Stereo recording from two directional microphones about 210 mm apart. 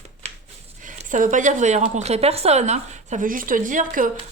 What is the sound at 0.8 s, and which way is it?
Speech, 40° right (ahead or behind).